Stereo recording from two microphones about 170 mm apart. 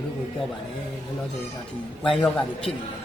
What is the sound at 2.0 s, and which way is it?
Speech, 5° left (ahead or behind).